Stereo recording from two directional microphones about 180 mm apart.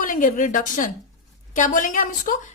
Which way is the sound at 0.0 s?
45° left (ahead or behind).